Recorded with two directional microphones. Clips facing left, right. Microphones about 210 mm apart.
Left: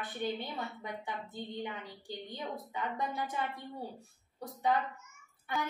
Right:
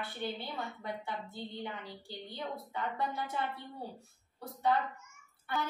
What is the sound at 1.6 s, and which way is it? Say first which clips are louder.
A woman's voice: left 1 dB; 15° left (ahead or behind).